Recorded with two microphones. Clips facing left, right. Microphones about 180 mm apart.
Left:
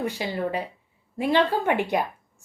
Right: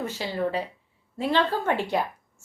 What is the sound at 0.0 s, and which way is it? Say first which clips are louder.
A woman's voice: left 1 dB; 15° left (ahead or behind).